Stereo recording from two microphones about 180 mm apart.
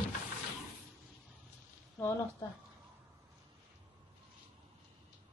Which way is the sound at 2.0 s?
15° left (ahead or behind).